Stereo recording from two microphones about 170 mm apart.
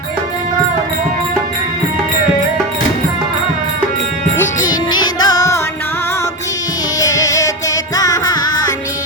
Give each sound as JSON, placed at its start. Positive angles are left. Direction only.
{"t": 4.7, "sound": "music", "side_deg": 25}
{"t": 7.0, "sound": "music", "side_deg": 20}